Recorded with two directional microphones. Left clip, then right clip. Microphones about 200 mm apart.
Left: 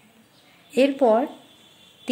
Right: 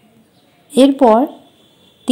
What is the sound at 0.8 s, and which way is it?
Speech, 20° right (ahead or behind).